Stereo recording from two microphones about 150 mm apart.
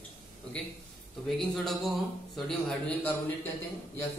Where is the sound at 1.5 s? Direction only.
Centre (ahead or behind).